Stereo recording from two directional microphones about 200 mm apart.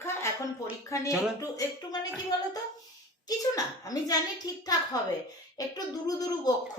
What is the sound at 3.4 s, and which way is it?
A child's voice, 15° left (ahead or behind).